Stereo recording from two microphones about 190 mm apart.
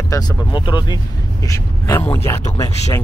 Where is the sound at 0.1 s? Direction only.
20° left (ahead or behind).